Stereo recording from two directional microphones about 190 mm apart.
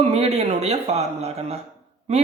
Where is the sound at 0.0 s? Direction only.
35° right (ahead or behind).